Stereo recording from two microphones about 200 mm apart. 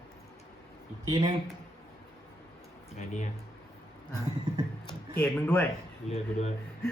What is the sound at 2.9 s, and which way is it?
Speech, 35° left (ahead or behind).